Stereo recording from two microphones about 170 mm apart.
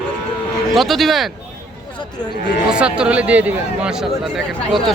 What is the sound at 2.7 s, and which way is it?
A man's voice, 5° right (ahead or behind).